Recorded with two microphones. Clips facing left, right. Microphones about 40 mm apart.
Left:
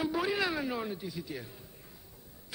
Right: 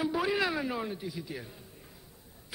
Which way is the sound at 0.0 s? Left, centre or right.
Centre.